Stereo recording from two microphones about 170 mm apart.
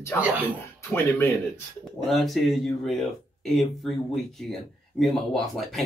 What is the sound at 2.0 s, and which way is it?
Speech, centre (ahead or behind).